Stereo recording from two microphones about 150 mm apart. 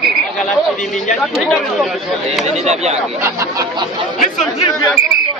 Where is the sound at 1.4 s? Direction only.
Centre (ahead or behind).